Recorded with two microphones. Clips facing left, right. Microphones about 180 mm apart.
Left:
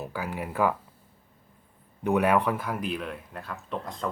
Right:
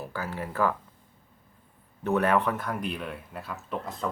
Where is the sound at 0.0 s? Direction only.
15° left (ahead or behind).